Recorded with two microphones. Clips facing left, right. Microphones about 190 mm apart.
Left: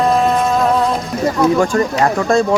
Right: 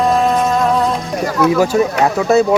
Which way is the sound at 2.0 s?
5° right (ahead or behind).